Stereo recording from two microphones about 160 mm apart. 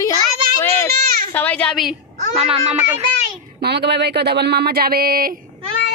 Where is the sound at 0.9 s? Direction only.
65° right (ahead or behind).